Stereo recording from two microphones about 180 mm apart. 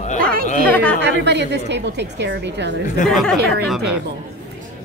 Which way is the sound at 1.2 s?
70° right (ahead or behind).